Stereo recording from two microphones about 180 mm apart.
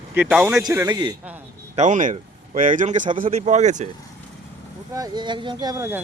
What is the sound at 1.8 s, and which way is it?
Speech, 45° right (ahead or behind).